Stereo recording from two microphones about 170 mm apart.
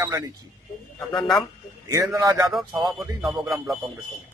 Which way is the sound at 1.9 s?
20° right (ahead or behind).